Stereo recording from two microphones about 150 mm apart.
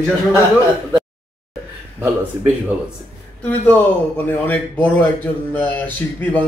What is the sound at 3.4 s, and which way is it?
A man's voice, 10° left (ahead or behind).